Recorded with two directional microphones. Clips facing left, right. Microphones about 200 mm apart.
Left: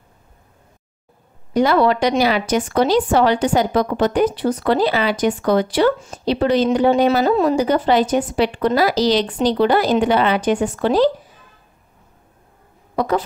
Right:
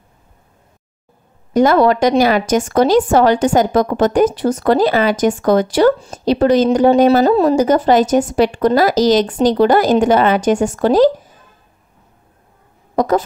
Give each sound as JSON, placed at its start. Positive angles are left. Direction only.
{"t": 1.5, "sound": "a woman's voice", "side_deg": -45}
{"t": 12.9, "sound": "speech", "side_deg": -45}